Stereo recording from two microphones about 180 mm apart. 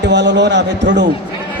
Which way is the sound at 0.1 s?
75° right (ahead or behind).